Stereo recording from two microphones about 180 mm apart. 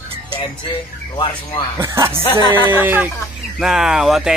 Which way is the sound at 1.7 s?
15° right (ahead or behind).